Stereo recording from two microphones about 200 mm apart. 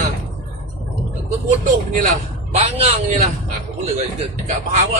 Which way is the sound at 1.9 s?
40° right (ahead or behind).